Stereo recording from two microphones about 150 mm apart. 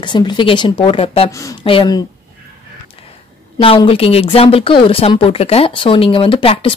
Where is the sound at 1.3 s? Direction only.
20° left (ahead or behind).